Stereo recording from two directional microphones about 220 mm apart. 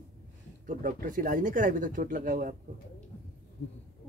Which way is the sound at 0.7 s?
40° right (ahead or behind).